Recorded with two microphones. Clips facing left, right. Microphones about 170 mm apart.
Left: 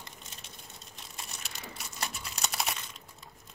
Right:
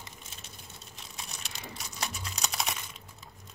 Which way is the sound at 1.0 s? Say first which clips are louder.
Right 1 dB; centre (ahead or behind).